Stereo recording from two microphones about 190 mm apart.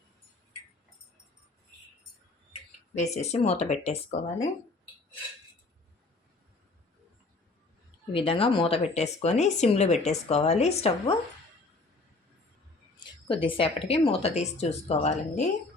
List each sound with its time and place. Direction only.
3.0 s speech: 35° left (ahead or behind)
8.1 s speech: 30° left (ahead or behind)
13.0 s speech: 25° left (ahead or behind)